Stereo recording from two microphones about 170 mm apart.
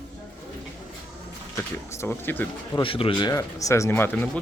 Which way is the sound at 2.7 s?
30° left (ahead or behind).